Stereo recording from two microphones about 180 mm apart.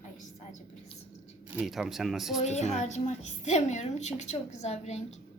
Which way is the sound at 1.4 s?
5° right (ahead or behind).